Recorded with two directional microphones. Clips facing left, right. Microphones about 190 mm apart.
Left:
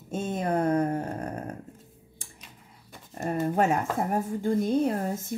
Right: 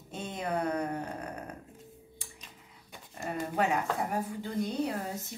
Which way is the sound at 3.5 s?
45° left (ahead or behind).